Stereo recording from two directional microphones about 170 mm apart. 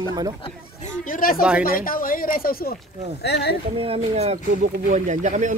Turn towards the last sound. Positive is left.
turn(degrees=-45)  # may be behind; listen again after turning